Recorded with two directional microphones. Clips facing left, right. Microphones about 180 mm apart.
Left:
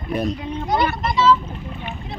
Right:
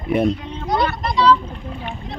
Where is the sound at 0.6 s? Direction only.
Centre (ahead or behind).